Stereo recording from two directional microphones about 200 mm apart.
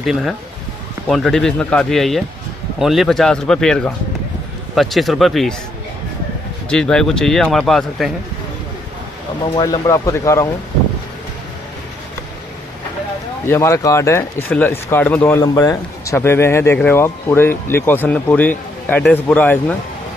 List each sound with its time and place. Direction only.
0.0 s speech: centre (ahead or behind)
6.7 s speech: 5° left (ahead or behind)
9.6 s speech: 20° left (ahead or behind)
13.5 s speech: 15° left (ahead or behind)